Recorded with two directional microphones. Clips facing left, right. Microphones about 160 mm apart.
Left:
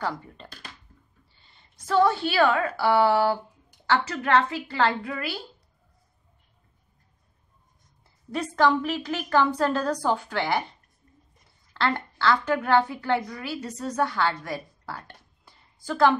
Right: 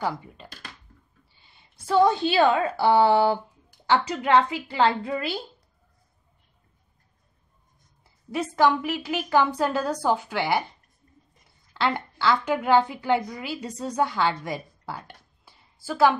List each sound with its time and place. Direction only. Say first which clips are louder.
0.0 s a woman's voice: right 2 dB; 10° right (ahead or behind)
8.3 s a woman's voice: right 1 dB; 10° right (ahead or behind)
11.7 s a woman's voice: right 1 dB; 15° right (ahead or behind)